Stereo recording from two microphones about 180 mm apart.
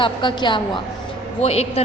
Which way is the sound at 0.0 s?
25° left (ahead or behind).